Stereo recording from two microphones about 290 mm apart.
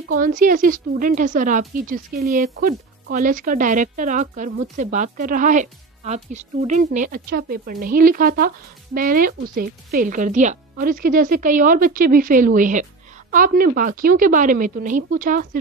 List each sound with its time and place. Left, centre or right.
0.1 s speech: right